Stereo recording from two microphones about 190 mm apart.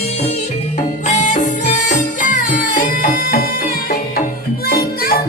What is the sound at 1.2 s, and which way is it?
Music, 40° left (ahead or behind).